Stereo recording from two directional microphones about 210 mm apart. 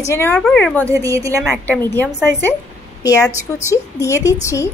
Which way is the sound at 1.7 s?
10° left (ahead or behind).